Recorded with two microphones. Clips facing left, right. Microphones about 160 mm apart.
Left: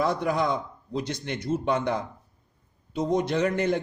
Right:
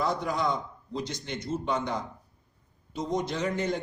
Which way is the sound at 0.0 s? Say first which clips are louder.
Left 3 dB; 60° left (ahead or behind).